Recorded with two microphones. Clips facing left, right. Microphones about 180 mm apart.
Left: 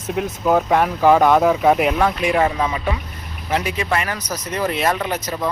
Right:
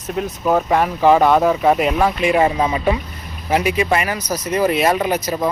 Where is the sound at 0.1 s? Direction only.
5° left (ahead or behind).